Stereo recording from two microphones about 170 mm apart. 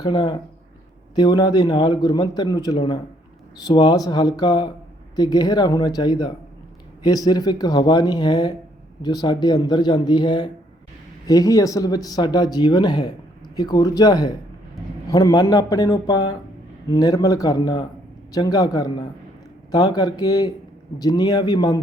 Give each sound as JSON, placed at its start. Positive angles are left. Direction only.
{"t": 0.0, "sound": "speech", "side_deg": 25}